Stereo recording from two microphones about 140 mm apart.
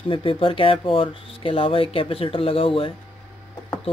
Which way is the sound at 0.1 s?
40° left (ahead or behind).